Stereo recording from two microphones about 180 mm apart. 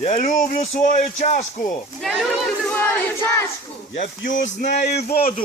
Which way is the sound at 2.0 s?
Centre (ahead or behind).